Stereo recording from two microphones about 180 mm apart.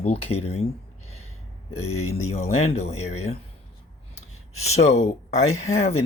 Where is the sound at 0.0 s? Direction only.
35° left (ahead or behind).